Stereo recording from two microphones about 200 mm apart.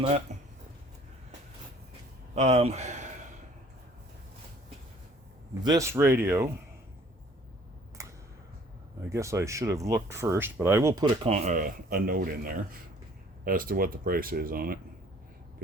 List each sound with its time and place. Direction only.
0.3 s a sound: 35° right (ahead or behind)
2.3 s a man's voice: 35° right (ahead or behind)
5.6 s speech: 15° right (ahead or behind)
8.0 s a sound: 15° right (ahead or behind)
9.0 s speech: 15° right (ahead or behind)
11.2 s speech: 35° right (ahead or behind)